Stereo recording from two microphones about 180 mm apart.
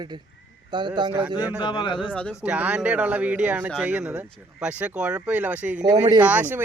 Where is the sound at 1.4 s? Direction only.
10° right (ahead or behind).